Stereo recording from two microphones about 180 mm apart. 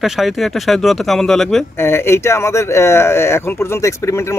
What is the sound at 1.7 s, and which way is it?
Speech, 15° left (ahead or behind).